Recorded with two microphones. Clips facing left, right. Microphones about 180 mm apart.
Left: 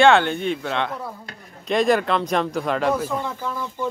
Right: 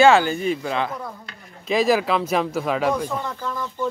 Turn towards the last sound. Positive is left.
turn(degrees=5)  # may be behind; listen again after turning